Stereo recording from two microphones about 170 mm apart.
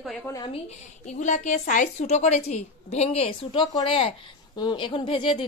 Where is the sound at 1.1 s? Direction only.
45° left (ahead or behind).